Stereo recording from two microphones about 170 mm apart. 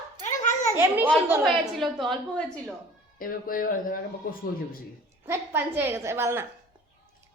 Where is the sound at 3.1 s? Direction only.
55° left (ahead or behind).